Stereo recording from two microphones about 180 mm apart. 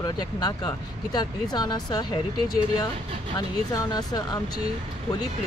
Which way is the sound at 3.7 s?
20° left (ahead or behind).